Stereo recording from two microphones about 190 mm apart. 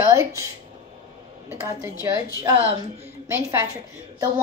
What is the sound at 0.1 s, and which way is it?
Speech, 15° right (ahead or behind).